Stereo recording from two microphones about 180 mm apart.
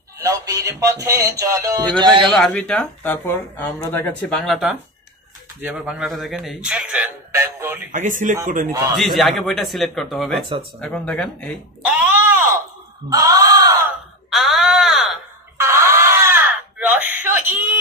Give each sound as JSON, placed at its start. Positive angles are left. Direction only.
{"t": 0.3, "sound": "speech", "side_deg": -20}
{"t": 2.2, "sound": "speech", "side_deg": 5}
{"t": 7.9, "sound": "speech", "side_deg": -45}
{"t": 8.9, "sound": "speech", "side_deg": 0}
{"t": 11.8, "sound": "a sound", "side_deg": -10}
{"t": 13.1, "sound": "speech", "side_deg": -20}
{"t": 14.3, "sound": "speech", "side_deg": 0}
{"t": 15.5, "sound": "a sound", "side_deg": -15}